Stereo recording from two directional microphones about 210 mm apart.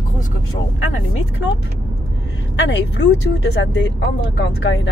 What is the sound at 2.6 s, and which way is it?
Speech, 55° left (ahead or behind).